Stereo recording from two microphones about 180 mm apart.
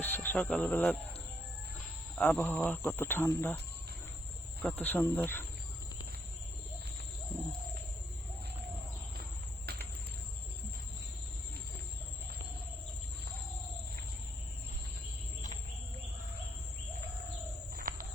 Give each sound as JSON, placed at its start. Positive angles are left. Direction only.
{"t": 0.0, "sound": "speech", "side_deg": 10}
{"t": 2.1, "sound": "speech", "side_deg": 5}
{"t": 4.6, "sound": "speech", "side_deg": 10}
{"t": 9.7, "sound": "cricket", "side_deg": -60}
{"t": 17.7, "sound": "a sound", "side_deg": -55}